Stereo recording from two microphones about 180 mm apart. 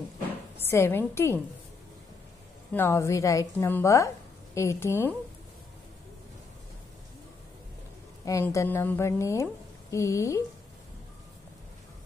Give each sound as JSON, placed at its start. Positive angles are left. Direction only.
{"t": 0.6, "sound": "a woman's voice", "side_deg": 15}
{"t": 2.7, "sound": "a woman's voice", "side_deg": 15}
{"t": 8.3, "sound": "a woman's voice", "side_deg": 15}